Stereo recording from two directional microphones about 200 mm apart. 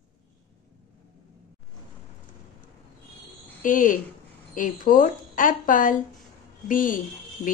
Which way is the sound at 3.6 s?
40° left (ahead or behind).